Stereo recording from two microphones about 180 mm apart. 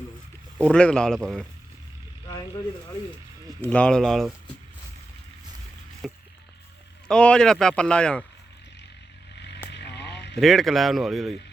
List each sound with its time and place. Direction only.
0.6 s speech: 5° left (ahead or behind)
3.6 s speech: 5° left (ahead or behind)
6.0 s a sound: centre (ahead or behind)
7.1 s speech: 5° left (ahead or behind)
9.6 s vehicle: 70° left (ahead or behind)
10.3 s speech: centre (ahead or behind)